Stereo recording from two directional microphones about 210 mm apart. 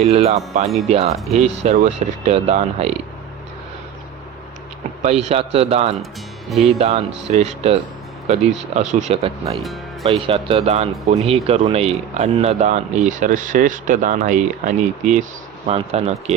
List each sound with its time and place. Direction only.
0.0 s speech: 30° right (ahead or behind)
5.0 s a man's voice: 30° right (ahead or behind)